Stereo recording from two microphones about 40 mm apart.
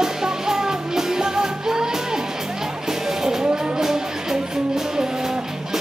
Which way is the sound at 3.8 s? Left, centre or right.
Centre.